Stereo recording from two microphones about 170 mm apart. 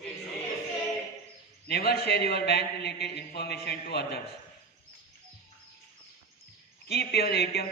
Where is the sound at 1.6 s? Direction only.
65° left (ahead or behind).